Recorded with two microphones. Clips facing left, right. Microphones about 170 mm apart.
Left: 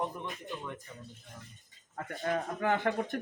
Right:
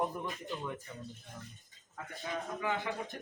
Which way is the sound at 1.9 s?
55° left (ahead or behind).